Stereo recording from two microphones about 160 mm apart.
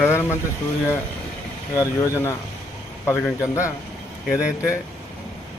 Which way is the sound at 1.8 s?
20° left (ahead or behind).